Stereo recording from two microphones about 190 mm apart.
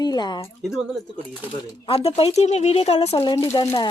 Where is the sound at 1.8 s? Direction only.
30° left (ahead or behind).